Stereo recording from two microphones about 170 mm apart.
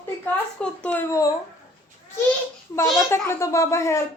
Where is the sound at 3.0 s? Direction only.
15° left (ahead or behind).